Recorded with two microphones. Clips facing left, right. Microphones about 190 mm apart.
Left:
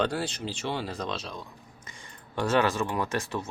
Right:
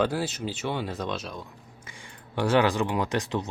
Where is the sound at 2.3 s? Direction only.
15° right (ahead or behind).